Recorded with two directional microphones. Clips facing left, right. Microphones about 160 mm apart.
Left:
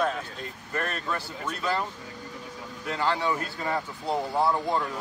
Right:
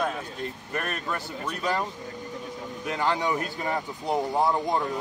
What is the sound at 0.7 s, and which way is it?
Speech, 20° right (ahead or behind).